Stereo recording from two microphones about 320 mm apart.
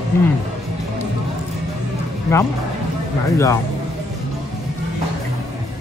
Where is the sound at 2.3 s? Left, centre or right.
Centre.